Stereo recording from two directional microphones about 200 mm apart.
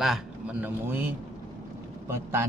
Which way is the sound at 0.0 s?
5° right (ahead or behind).